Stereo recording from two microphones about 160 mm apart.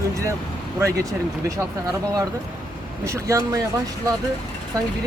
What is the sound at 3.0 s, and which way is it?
Speech, 20° right (ahead or behind).